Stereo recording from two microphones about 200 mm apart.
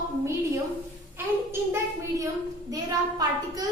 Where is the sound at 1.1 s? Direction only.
10° right (ahead or behind).